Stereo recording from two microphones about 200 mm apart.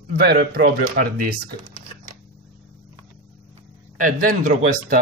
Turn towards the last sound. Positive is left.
turn(degrees=-45)  # may be behind; listen again after turning